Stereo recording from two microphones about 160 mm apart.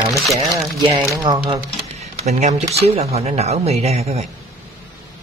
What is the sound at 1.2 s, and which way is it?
Speech, 30° right (ahead or behind).